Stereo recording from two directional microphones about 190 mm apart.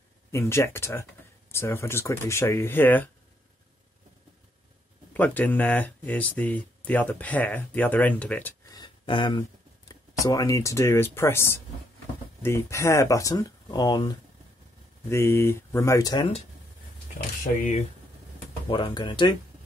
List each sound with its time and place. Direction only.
0.3 s speech: 15° left (ahead or behind)
5.1 s speech: 10° left (ahead or behind)
8.7 s speech: 25° left (ahead or behind)
17.4 s speech: 35° left (ahead or behind)
18.7 s speech: 25° left (ahead or behind)